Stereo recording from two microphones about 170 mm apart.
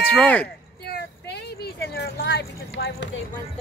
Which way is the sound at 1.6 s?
70° left (ahead or behind).